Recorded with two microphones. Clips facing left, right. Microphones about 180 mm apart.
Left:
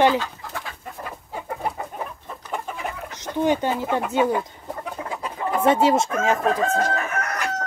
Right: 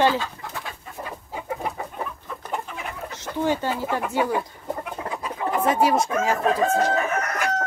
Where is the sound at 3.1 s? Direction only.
20° left (ahead or behind).